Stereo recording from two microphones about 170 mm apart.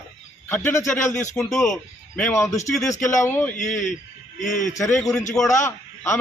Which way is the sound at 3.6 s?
45° left (ahead or behind).